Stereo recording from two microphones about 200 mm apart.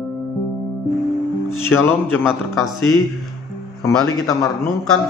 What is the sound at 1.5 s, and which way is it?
Speech, 10° left (ahead or behind).